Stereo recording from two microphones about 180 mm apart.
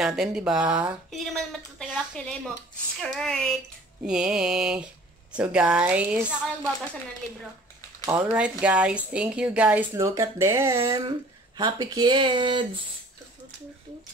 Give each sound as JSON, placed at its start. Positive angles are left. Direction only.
{"t": 0.0, "sound": "a woman's voice", "side_deg": -5}
{"t": 8.4, "sound": "a woman's voice", "side_deg": -5}